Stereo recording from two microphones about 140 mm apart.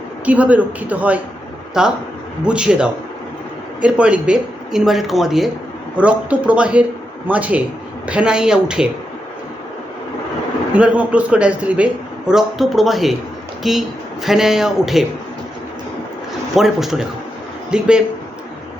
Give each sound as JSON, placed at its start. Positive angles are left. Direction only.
{"t": 0.3, "sound": "a man's voice", "side_deg": -10}
{"t": 10.8, "sound": "a man's voice", "side_deg": -10}
{"t": 16.6, "sound": "a man's voice", "side_deg": 0}